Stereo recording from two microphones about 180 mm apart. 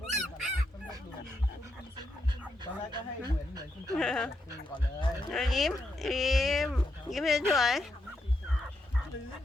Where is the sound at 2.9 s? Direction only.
25° right (ahead or behind).